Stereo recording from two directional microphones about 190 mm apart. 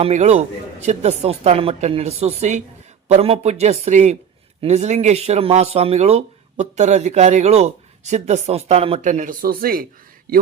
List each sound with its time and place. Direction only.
0.0 s speech: 35° right (ahead or behind)